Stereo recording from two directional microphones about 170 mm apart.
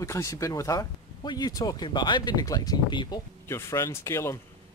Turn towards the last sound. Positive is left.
turn(degrees=15)  # may be behind; listen again after turning